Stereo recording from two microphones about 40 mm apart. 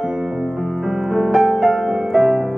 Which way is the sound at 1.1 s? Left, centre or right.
Centre.